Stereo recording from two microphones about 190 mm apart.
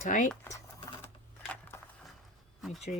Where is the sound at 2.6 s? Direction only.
Centre (ahead or behind).